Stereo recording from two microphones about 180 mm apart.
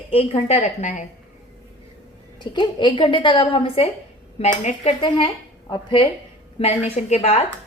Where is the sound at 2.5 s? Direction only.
25° left (ahead or behind).